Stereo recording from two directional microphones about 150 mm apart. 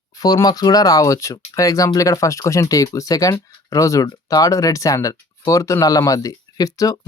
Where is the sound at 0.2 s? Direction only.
25° left (ahead or behind).